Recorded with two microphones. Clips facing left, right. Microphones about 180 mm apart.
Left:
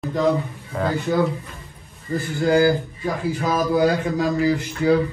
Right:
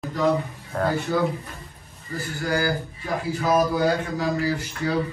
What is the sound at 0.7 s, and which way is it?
Speech, centre (ahead or behind).